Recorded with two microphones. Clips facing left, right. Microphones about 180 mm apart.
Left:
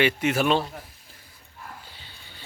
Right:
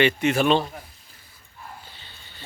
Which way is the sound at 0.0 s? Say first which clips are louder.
Right 2 dB; 10° left (ahead or behind).